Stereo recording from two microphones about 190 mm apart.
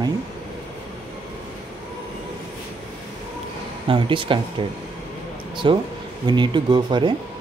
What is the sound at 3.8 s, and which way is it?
Speech, 25° right (ahead or behind).